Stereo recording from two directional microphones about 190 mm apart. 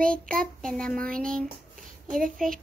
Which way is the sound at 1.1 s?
45° right (ahead or behind).